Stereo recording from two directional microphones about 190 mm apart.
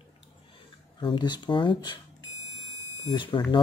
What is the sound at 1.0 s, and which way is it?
Speech, 25° left (ahead or behind).